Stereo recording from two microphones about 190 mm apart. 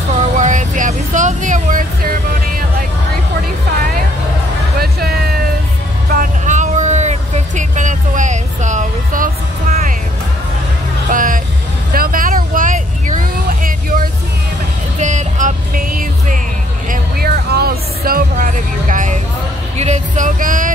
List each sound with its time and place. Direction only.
0.1 s vehicle: 40° right (ahead or behind)
4.7 s music: 55° right (ahead or behind)
6.1 s a sound: 40° right (ahead or behind)
11.1 s vehicle: 45° right (ahead or behind)
15.0 s music: 40° right (ahead or behind)
16.9 s vehicle: 55° right (ahead or behind)
19.8 s music: 40° right (ahead or behind)